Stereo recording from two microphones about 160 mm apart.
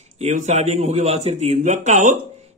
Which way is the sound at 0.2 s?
45° right (ahead or behind).